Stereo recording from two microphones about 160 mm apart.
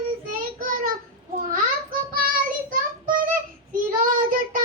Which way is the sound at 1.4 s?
60° right (ahead or behind).